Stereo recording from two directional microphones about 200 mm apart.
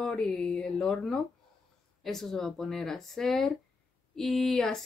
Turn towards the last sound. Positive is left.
turn(degrees=0)  # may be behind; listen again after turning